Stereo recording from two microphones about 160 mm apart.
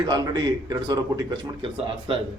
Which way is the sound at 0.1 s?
25° right (ahead or behind).